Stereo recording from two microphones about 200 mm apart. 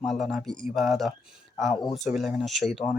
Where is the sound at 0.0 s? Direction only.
Centre (ahead or behind).